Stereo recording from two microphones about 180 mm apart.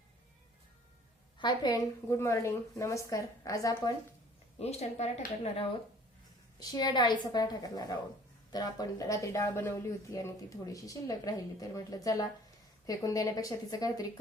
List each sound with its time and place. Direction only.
1.4 s a woman's voice: 25° left (ahead or behind)
4.5 s speech: 35° left (ahead or behind)
6.6 s speech: 20° left (ahead or behind)